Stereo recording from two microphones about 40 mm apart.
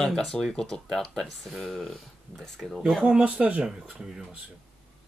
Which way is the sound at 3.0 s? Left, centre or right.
Right.